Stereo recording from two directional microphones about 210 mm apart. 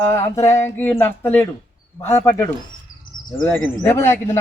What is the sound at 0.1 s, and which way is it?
A man's voice, 15° left (ahead or behind).